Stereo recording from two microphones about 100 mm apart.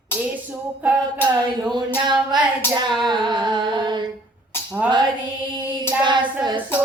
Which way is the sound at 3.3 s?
50° right (ahead or behind).